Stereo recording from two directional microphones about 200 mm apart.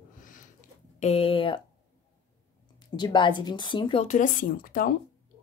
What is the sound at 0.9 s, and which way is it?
Speech, 30° left (ahead or behind).